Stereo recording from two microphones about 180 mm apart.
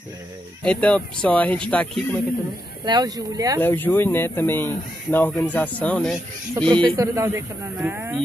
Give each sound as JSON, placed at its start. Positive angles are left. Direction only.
{"t": 0.7, "sound": "speech", "side_deg": 5}
{"t": 2.8, "sound": "speech", "side_deg": -20}
{"t": 3.6, "sound": "speech", "side_deg": 10}
{"t": 6.7, "sound": "a man's voice", "side_deg": -20}